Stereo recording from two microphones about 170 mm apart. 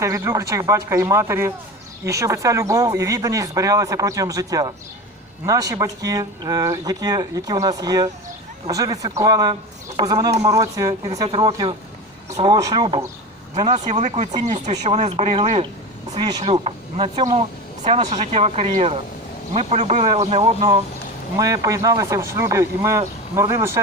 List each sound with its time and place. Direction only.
0.0 s speech: 20° right (ahead or behind)
13.7 s speech: 45° right (ahead or behind)
21.3 s speech: 20° right (ahead or behind)